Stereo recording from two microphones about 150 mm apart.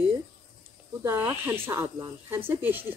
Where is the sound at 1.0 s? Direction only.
15° right (ahead or behind).